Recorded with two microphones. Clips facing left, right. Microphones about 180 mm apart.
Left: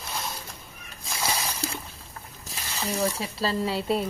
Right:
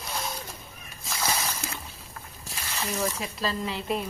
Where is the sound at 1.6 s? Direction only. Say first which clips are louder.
Left 5 dB; 35° left (ahead or behind).